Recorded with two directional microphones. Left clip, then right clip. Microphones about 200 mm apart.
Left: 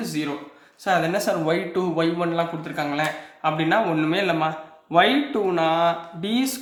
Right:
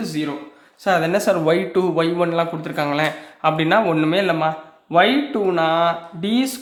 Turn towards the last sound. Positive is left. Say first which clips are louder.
# right 3 dB
turn(degrees=-20)  # may be behind; listen again after turning